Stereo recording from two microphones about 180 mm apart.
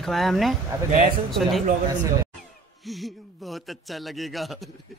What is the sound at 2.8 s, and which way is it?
A man's voice, centre (ahead or behind).